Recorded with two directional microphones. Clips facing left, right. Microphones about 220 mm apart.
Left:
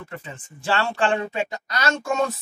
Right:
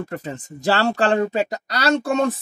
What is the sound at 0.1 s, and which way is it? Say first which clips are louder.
Speech: right 8 dB; 40° right (ahead or behind).